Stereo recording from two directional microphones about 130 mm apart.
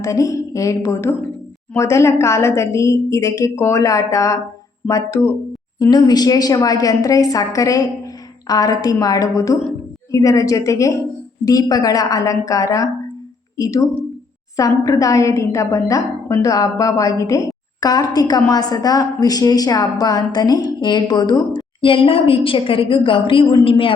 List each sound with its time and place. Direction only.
0.0 s a woman's voice: 25° left (ahead or behind); by 23.9 s 45° left (ahead or behind)